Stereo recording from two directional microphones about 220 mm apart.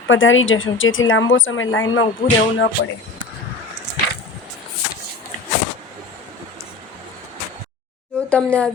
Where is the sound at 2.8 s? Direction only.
50° left (ahead or behind).